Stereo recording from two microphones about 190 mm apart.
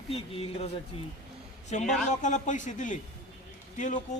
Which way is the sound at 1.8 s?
Centre (ahead or behind).